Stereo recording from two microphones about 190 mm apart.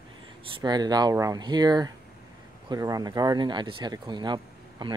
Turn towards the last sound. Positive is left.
turn(degrees=-25)  # may be behind; listen again after turning